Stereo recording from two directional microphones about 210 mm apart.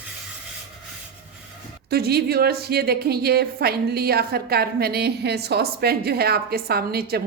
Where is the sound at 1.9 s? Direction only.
50° right (ahead or behind).